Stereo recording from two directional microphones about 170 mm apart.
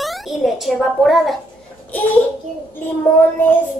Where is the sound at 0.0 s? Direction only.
Centre (ahead or behind).